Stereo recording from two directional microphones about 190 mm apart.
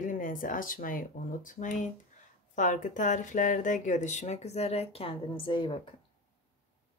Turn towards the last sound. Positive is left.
turn(degrees=25)  # may be behind; listen again after turning